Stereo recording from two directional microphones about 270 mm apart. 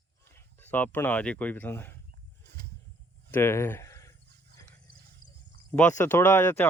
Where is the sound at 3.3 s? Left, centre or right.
Centre.